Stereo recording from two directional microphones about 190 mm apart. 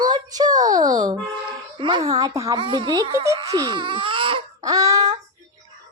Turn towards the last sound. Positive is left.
turn(degrees=-20)  # may be behind; listen again after turning